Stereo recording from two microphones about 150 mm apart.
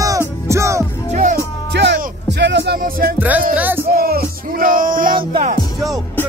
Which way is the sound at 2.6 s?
80° right.